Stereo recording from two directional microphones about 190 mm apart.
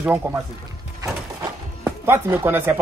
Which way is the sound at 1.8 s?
10° right (ahead or behind).